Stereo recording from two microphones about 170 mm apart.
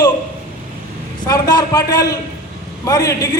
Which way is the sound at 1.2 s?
20° left (ahead or behind).